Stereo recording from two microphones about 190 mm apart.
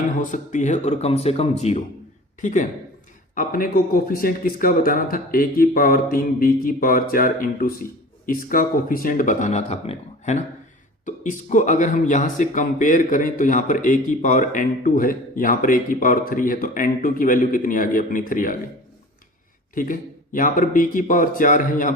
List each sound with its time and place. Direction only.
0.2 s speech: 40° left (ahead or behind)
19.7 s speech: 45° left (ahead or behind)